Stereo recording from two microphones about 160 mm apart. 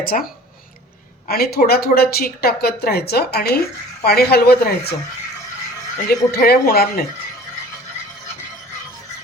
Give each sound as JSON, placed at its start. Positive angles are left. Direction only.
{"t": 0.0, "sound": "speech", "side_deg": 65}
{"t": 1.3, "sound": "speech", "side_deg": 75}
{"t": 6.1, "sound": "speech", "side_deg": 75}